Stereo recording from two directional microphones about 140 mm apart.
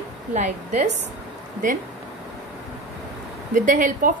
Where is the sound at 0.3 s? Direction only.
60° right (ahead or behind).